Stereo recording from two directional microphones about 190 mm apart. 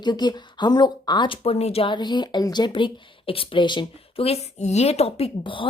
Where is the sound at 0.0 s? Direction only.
20° left (ahead or behind).